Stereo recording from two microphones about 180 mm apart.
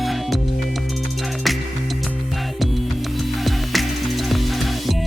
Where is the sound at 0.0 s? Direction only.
Centre (ahead or behind).